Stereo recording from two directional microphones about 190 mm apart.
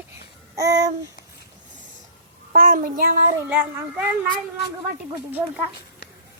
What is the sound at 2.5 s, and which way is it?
Speech, 45° right (ahead or behind).